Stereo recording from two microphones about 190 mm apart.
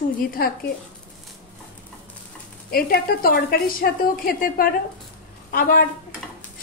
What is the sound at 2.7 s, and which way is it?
A woman's voice, 55° left (ahead or behind).